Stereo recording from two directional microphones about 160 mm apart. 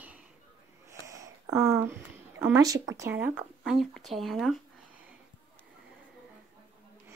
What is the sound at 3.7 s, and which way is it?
Speech, centre (ahead or behind).